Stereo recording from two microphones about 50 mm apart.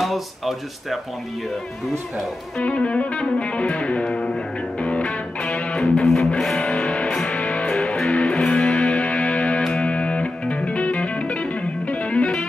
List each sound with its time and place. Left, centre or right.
0.0 s speech: centre
2.6 s music: left; by 6.6 s centre
6.6 s music: centre
8.2 s music: left